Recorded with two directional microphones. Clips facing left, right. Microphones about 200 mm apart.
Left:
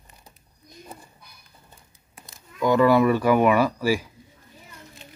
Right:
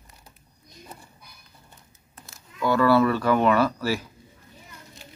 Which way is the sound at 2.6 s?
15° left (ahead or behind).